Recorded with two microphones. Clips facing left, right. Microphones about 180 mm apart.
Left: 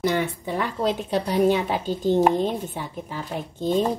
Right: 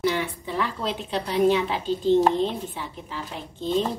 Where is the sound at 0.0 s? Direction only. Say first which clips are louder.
Left 2 dB; 45° left (ahead or behind).